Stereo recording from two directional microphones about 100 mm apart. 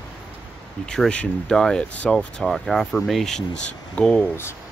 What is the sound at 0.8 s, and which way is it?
Speech, 5° left (ahead or behind).